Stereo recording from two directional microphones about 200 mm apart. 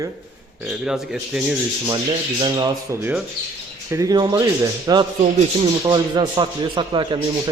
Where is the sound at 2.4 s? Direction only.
20° right (ahead or behind).